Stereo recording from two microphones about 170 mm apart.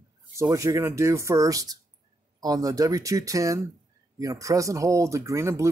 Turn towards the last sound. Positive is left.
turn(degrees=-15)  # may be behind; listen again after turning